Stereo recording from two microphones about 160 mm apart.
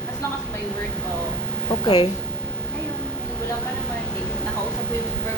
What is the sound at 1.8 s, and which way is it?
Speech, 35° left (ahead or behind).